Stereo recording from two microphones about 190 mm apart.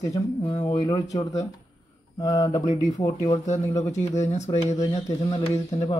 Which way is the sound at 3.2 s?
35° left (ahead or behind).